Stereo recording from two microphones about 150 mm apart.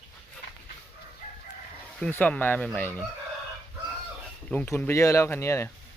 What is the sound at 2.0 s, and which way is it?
Speech, 10° left (ahead or behind).